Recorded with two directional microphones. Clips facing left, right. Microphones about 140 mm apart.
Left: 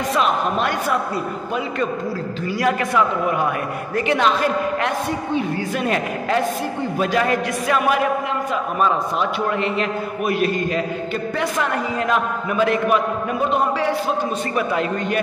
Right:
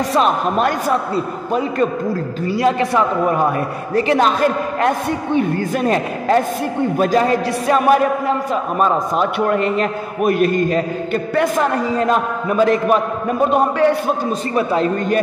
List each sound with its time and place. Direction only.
0.1 s a man's voice: 40° right (ahead or behind)
2.5 s a man's voice: 30° right (ahead or behind)
5.8 s a man's voice: 40° right (ahead or behind)
13.5 s a man's voice: 55° right (ahead or behind)
14.5 s a man's voice: 35° right (ahead or behind)